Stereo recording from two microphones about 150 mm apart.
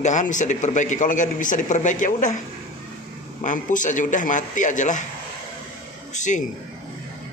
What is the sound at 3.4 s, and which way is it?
A man's voice, 60° left (ahead or behind).